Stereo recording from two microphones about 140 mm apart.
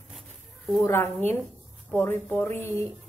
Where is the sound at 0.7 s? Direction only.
20° left (ahead or behind).